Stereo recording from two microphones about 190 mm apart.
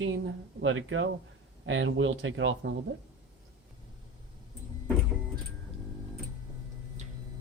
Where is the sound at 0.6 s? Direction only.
90° right.